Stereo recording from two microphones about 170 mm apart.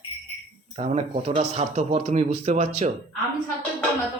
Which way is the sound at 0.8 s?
40° right (ahead or behind).